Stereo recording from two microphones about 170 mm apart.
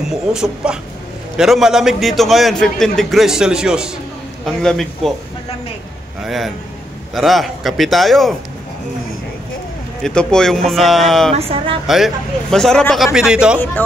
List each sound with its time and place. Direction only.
0.1 s a man's voice: 5° right (ahead or behind)
6.2 s a man's voice: centre (ahead or behind)
10.0 s a man's voice: 5° left (ahead or behind)
11.3 s speech: 35° right (ahead or behind)
11.9 s a man's voice: centre (ahead or behind)
13.8 s speech: 10° left (ahead or behind)